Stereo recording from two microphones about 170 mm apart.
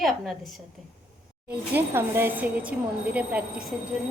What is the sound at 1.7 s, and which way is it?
A woman's voice, 15° right (ahead or behind).